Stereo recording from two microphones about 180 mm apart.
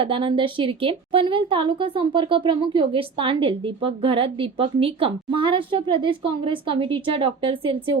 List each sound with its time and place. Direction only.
0.0 s speech: 30° right (ahead or behind)